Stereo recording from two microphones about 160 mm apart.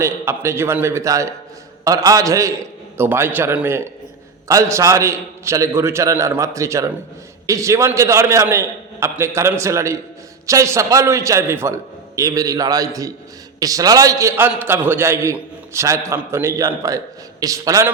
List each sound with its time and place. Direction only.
0.0 s a man's voice: 15° right (ahead or behind)